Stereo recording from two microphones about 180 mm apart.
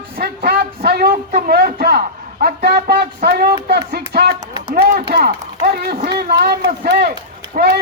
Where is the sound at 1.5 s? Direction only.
60° right (ahead or behind).